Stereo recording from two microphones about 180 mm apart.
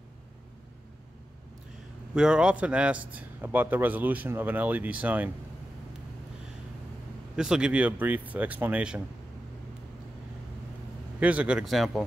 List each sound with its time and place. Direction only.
2.1 s a man's voice: 5° right (ahead or behind)
7.3 s a man's voice: 5° right (ahead or behind)
11.1 s speech: 10° right (ahead or behind)